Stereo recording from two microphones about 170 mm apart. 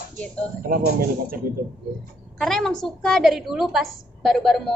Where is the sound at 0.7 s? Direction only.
55° right (ahead or behind).